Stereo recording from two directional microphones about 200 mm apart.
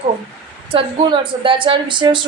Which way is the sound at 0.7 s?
25° right (ahead or behind).